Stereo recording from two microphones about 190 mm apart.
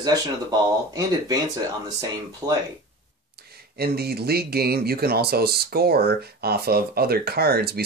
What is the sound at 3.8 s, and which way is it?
Speech, 55° right (ahead or behind).